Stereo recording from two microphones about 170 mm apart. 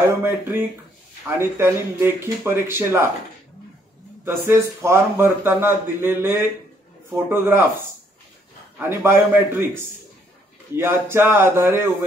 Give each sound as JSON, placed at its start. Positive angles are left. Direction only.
{"t": 0.2, "sound": "speech", "side_deg": -10}
{"t": 4.2, "sound": "speech", "side_deg": -15}